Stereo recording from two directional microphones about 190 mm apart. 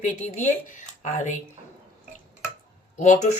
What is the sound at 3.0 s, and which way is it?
Speech, 40° left (ahead or behind).